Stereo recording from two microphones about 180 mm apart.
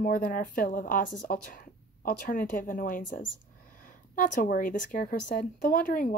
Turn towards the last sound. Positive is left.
turn(degrees=50)  # may be behind; listen again after turning